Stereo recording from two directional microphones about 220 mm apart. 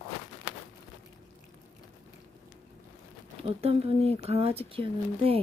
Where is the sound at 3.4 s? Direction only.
25° right (ahead or behind).